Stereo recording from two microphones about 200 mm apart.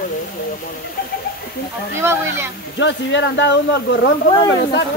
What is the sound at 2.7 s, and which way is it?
Speech, 65° left (ahead or behind).